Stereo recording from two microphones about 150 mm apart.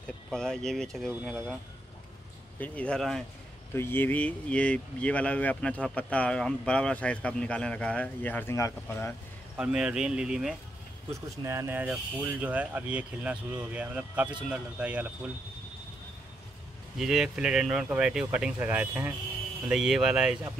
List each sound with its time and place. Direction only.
0.3 s speech: 5° left (ahead or behind)
2.6 s speech: 10° left (ahead or behind)
3.7 s speech: 15° left (ahead or behind)
9.6 s speech: 5° right (ahead or behind)
11.4 s speech: 15° right (ahead or behind)
17.0 s speech: 5° right (ahead or behind)